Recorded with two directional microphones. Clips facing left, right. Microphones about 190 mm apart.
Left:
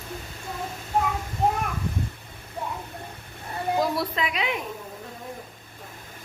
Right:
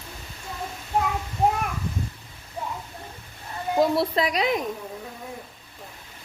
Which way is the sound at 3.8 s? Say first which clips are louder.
Right 6 dB; 30° right (ahead or behind).